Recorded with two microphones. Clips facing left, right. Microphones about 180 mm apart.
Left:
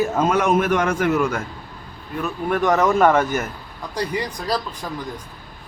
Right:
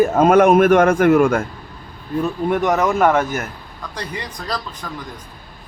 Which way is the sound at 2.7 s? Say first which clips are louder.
Left 1 dB; 5° right (ahead or behind).